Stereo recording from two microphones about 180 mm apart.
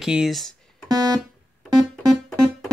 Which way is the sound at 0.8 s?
20° right (ahead or behind).